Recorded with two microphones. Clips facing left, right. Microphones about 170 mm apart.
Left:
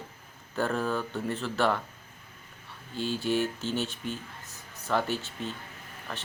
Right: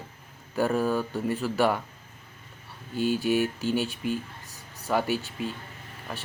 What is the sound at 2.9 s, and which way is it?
Speech, 15° right (ahead or behind).